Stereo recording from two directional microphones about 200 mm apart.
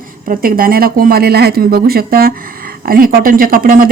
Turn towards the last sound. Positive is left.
turn(degrees=-45)  # may be behind; listen again after turning